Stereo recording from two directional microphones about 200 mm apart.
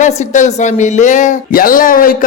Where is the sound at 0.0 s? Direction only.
35° left (ahead or behind).